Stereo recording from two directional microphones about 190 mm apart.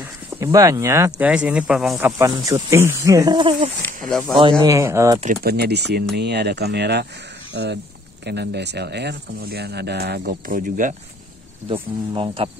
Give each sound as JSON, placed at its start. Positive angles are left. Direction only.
{"t": 0.0, "sound": "speech", "side_deg": -15}
{"t": 5.2, "sound": "speech", "side_deg": -50}
{"t": 11.7, "sound": "speech", "side_deg": -30}